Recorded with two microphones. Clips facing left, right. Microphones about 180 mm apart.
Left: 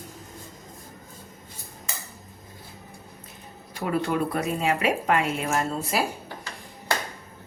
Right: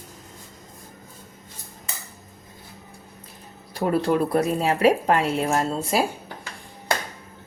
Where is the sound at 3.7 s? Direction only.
35° right (ahead or behind).